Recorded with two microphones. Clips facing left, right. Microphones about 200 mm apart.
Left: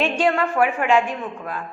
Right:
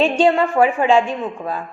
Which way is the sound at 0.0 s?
25° right (ahead or behind).